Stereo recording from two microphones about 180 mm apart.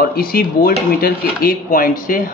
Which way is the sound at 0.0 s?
55° left (ahead or behind).